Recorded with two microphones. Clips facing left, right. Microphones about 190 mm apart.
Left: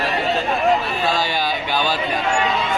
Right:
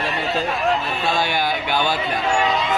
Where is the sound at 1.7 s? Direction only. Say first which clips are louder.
Even; 15° right (ahead or behind).